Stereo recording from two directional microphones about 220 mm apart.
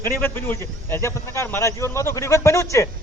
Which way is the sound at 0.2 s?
10° left (ahead or behind).